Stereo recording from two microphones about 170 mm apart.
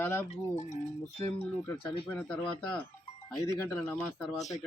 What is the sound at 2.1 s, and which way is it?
Speech, 5° left (ahead or behind).